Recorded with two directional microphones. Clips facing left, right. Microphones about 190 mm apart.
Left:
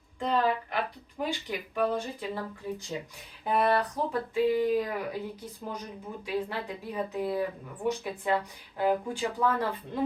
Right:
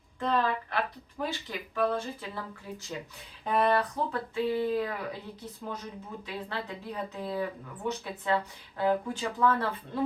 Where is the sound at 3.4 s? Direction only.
10° left (ahead or behind).